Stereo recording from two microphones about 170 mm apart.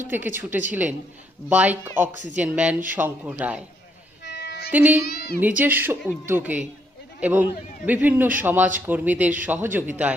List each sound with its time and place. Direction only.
0.1 s speech: 10° right (ahead or behind)
4.2 s music: 85° left
4.7 s speech: 10° right (ahead or behind)
5.0 s a woman's voice: 65° left (ahead or behind)
5.4 s speech: 10° right (ahead or behind)